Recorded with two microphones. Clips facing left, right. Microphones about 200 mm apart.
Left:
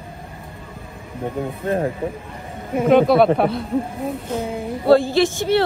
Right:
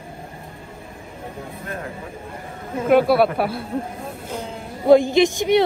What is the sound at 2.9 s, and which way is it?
A woman's voice, 5° right (ahead or behind).